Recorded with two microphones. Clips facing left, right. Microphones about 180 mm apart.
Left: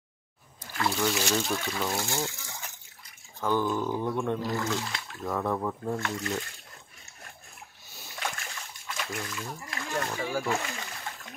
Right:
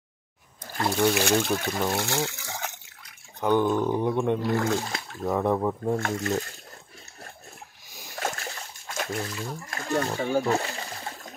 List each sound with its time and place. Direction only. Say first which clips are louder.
0.7 s speech: right 3 dB; 35° right (ahead or behind)
1.1 s speech: right 5 dB; 55° right (ahead or behind)
2.0 s water: right 4 dB; 70° right (ahead or behind)
3.3 s a sound: right 5 dB; 20° right (ahead or behind)
3.8 s speech: right 5 dB; 20° right (ahead or behind)
4.4 s speech: right 5 dB; 60° right (ahead or behind)
5.2 s speech: right 5 dB; 20° right (ahead or behind)
5.9 s speech: right 5 dB; 45° right (ahead or behind)
8.2 s splash: right 5 dB; 40° right (ahead or behind)
9.1 s speech: right 5 dB; 30° right (ahead or behind)
9.7 s splash: right 6 dB; 40° right (ahead or behind)